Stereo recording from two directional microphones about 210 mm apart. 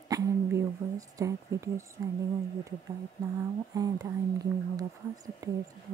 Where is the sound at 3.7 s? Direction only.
15° right (ahead or behind).